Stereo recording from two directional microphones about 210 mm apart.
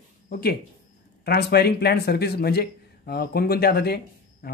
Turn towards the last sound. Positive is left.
turn(degrees=50)  # may be behind; listen again after turning